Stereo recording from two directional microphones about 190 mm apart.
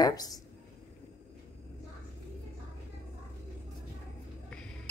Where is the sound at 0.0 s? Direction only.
20° left (ahead or behind).